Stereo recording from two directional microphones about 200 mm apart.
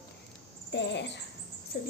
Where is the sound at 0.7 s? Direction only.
60° left (ahead or behind).